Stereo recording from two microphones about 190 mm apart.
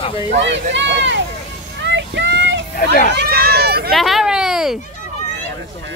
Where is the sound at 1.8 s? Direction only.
70° right (ahead or behind).